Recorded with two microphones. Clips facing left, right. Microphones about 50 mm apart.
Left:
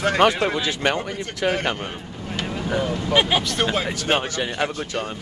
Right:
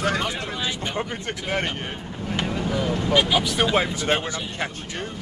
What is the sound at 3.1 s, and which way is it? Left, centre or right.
Speech, left.